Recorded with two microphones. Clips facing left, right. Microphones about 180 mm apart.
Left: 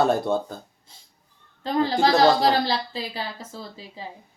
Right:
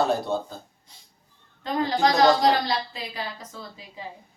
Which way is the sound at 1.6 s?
30° left (ahead or behind).